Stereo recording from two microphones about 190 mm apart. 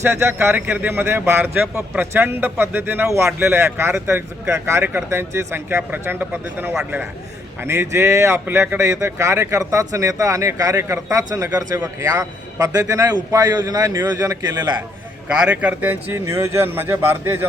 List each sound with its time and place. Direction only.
0.0 s speech: 15° right (ahead or behind)
15.3 s speech: 5° right (ahead or behind)